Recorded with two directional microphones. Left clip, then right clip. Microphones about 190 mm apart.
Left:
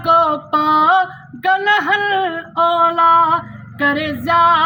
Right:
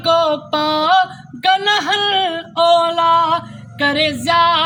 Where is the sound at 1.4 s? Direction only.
35° right (ahead or behind).